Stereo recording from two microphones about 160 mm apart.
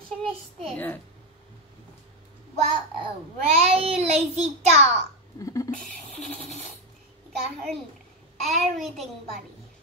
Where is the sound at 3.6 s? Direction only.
40° right (ahead or behind).